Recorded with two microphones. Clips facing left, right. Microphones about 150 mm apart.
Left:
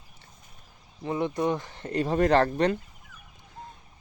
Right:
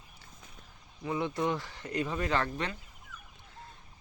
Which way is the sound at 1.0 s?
20° left (ahead or behind).